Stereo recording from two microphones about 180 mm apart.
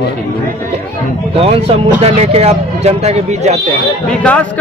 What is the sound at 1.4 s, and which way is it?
Speech, 35° right (ahead or behind).